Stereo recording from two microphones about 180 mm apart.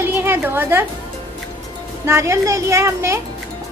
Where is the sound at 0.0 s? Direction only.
10° right (ahead or behind).